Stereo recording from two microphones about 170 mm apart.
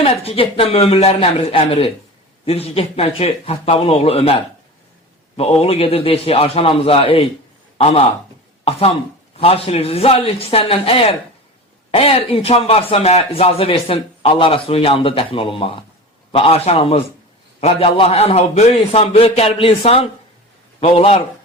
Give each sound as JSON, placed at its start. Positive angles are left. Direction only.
{"t": 0.0, "sound": "a man's voice", "side_deg": 35}